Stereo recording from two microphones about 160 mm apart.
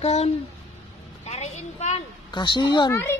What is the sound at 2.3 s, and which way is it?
Speech, 30° left (ahead or behind).